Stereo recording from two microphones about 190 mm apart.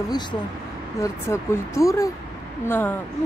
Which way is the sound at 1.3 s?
15° left (ahead or behind).